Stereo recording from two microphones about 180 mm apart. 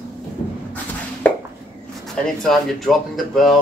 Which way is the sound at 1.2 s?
10° left (ahead or behind).